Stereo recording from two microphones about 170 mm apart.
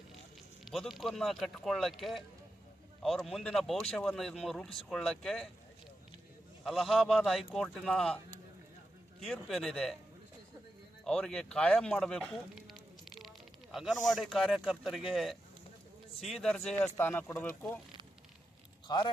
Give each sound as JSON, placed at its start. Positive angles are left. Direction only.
{"t": 0.6, "sound": "speech", "side_deg": 0}
{"t": 6.7, "sound": "speech", "side_deg": 0}
{"t": 9.2, "sound": "speech", "side_deg": 0}
{"t": 11.0, "sound": "speech", "side_deg": 5}
{"t": 18.9, "sound": "speech", "side_deg": 25}